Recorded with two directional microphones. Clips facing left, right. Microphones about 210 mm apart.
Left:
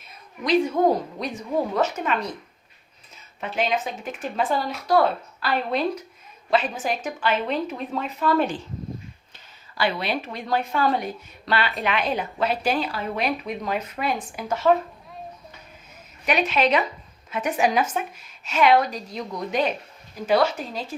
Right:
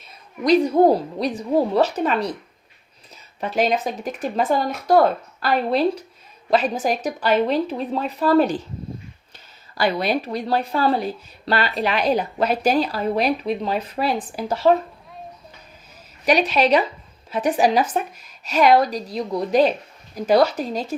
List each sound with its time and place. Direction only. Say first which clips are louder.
0.4 s speech: right 5 dB; 40° right (ahead or behind)
3.4 s speech: right 4 dB; 40° right (ahead or behind)
9.7 s speech: right 4 dB; 40° right (ahead or behind)
16.2 s speech: right 4 dB; 35° right (ahead or behind)